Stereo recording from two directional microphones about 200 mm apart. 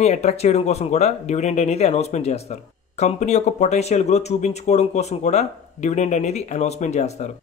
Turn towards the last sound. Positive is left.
turn(degrees=35)  # may be behind; listen again after turning